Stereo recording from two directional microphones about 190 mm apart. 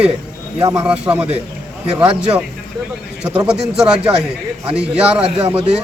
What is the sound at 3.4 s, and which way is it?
Speech, 5° right (ahead or behind).